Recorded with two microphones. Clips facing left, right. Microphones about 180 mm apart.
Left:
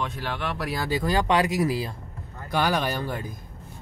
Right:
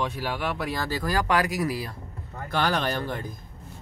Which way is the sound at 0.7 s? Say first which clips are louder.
Left 6 dB; 15° left (ahead or behind).